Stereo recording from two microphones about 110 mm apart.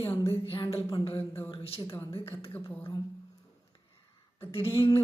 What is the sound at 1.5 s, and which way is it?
Speech, 60° left (ahead or behind).